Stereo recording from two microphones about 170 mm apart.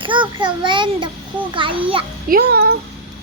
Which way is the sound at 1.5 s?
30° right (ahead or behind).